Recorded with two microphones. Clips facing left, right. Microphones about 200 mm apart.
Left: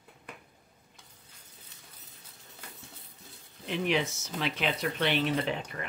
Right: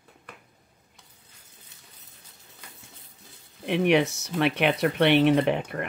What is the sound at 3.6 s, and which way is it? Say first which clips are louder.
Speech: right 8 dB; 65° right (ahead or behind).